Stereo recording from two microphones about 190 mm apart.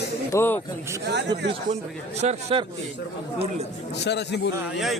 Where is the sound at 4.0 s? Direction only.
60° left (ahead or behind).